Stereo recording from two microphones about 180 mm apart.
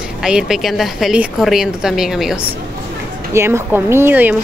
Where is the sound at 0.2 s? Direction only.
5° right (ahead or behind).